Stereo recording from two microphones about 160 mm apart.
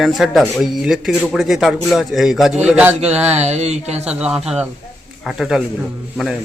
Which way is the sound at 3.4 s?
45° right (ahead or behind).